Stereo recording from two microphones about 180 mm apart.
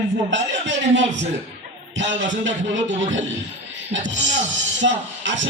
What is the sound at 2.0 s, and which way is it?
A man's voice, 90° right.